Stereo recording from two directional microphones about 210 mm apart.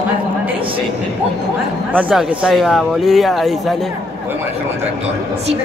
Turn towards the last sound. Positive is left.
turn(degrees=0)  # may be behind; listen again after turning